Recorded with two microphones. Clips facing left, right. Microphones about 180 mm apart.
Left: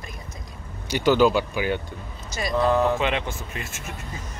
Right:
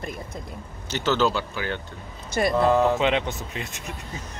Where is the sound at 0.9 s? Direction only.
10° left (ahead or behind).